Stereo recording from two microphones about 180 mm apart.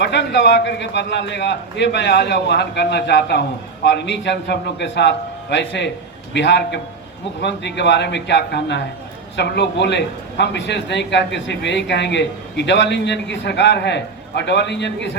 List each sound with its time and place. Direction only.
0.0 s a man's voice: 75° left (ahead or behind)
3.8 s a man's voice: 80° left